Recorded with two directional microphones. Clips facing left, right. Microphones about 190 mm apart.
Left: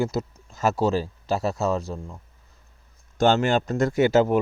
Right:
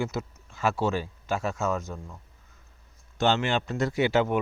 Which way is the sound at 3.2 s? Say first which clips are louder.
Left 5 dB; 45° left (ahead or behind).